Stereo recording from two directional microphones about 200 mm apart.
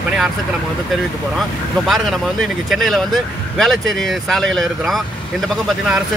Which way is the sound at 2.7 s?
Centre (ahead or behind).